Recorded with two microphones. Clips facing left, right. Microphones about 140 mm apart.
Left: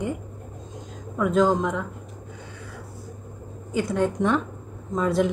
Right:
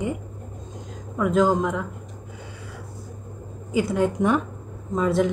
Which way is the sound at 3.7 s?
5° right (ahead or behind).